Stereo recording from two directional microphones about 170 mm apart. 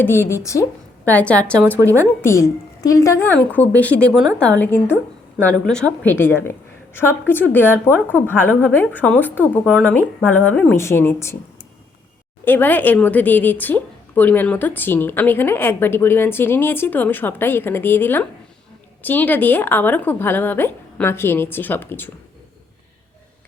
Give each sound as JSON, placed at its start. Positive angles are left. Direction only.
{"t": 0.0, "sound": "a woman's voice", "side_deg": 15}
{"t": 12.5, "sound": "a woman's voice", "side_deg": 10}